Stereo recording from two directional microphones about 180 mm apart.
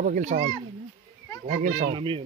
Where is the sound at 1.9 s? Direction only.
30° right (ahead or behind).